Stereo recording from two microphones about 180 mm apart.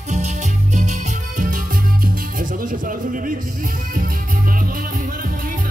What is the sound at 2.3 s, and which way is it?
Music, 50° right (ahead or behind).